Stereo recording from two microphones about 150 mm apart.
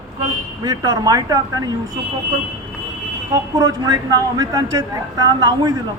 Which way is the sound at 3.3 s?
25° right (ahead or behind).